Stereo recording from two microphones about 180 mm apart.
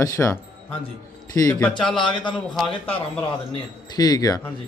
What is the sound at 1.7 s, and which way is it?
Speech, 5° left (ahead or behind).